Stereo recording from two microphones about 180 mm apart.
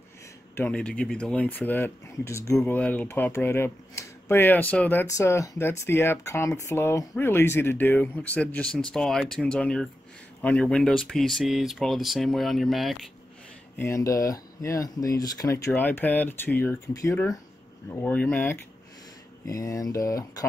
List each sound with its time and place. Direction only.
0.6 s speech: 5° left (ahead or behind)
13.7 s speech: 15° left (ahead or behind)